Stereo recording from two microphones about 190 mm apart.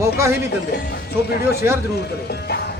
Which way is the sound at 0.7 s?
55° left (ahead or behind).